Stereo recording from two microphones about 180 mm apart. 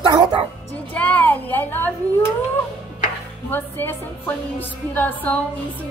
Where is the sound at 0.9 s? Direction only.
10° left (ahead or behind).